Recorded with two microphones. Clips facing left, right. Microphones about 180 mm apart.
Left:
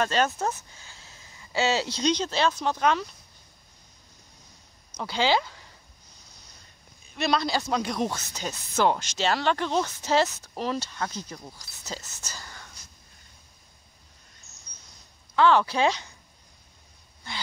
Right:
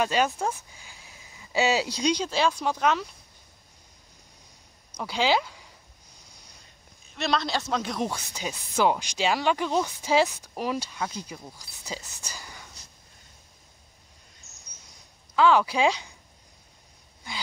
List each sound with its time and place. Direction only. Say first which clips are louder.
0.0 s speech: even; 10° right (ahead or behind)
4.9 s speech: even; 5° right (ahead or behind)
7.2 s a man's voice: left 2 dB; centre (ahead or behind)
8.1 s speech: even; 10° right (ahead or behind)
15.3 s speech: even; 5° right (ahead or behind)